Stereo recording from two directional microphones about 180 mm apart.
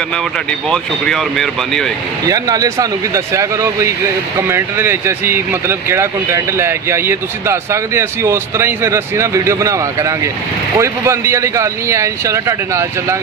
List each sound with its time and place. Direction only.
0.7 s speech: centre (ahead or behind)
2.2 s speech: 20° right (ahead or behind)